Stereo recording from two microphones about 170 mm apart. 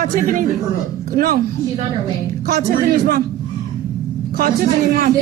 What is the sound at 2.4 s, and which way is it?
Speech, 60° right (ahead or behind).